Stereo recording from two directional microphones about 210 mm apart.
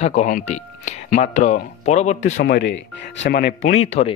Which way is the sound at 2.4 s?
60° left (ahead or behind).